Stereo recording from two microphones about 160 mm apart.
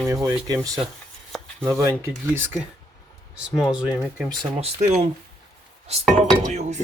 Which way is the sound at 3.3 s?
5° right (ahead or behind).